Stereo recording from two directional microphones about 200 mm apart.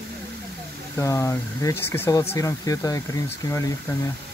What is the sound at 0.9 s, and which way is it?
Speech, 15° left (ahead or behind).